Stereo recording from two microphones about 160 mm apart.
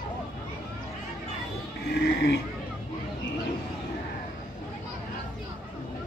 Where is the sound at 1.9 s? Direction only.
90° left.